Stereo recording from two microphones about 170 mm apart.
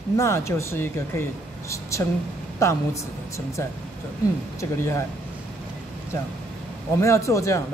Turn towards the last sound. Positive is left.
turn(degrees=20)  # may be behind; listen again after turning